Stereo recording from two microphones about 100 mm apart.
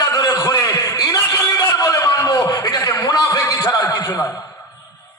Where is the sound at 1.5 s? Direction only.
30° left (ahead or behind).